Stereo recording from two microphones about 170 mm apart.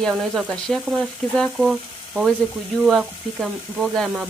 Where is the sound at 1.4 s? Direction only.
Centre (ahead or behind).